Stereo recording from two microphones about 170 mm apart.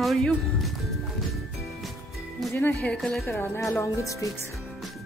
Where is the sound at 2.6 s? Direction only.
10° left (ahead or behind).